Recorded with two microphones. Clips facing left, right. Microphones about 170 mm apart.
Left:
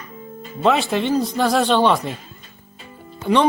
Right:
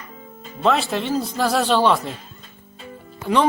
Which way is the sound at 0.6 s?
Centre (ahead or behind).